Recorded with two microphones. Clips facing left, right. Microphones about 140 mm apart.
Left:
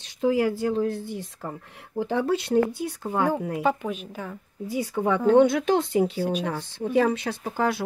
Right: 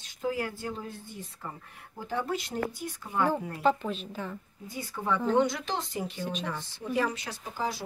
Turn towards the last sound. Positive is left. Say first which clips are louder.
# left 8 dB
turn(degrees=60)  # may be behind; listen again after turning